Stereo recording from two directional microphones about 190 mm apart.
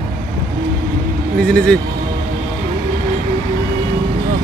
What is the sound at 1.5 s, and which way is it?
Music, 5° left (ahead or behind).